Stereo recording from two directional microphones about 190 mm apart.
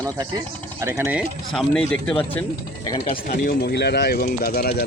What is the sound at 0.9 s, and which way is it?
Speech, 5° right (ahead or behind).